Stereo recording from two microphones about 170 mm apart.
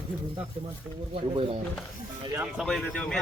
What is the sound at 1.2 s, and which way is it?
Speech, 35° right (ahead or behind).